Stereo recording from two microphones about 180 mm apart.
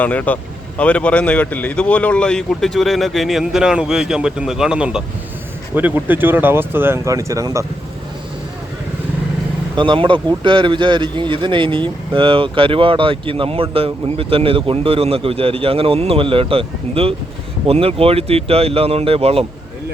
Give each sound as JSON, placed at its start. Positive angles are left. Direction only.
{"t": 0.0, "sound": "speech", "side_deg": 10}
{"t": 9.7, "sound": "speech", "side_deg": -25}